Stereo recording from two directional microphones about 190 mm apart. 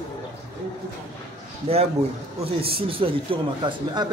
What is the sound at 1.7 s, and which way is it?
A man's voice, 30° right (ahead or behind).